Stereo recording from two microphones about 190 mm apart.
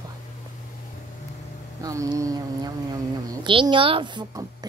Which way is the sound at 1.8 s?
20° right (ahead or behind).